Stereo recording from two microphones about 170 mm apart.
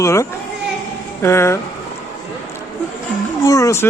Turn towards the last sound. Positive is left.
turn(degrees=15)  # may be behind; listen again after turning